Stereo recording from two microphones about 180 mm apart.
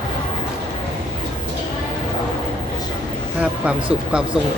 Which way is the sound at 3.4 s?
5° right (ahead or behind).